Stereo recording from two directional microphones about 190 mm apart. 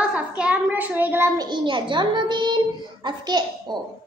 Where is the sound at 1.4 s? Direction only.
25° right (ahead or behind).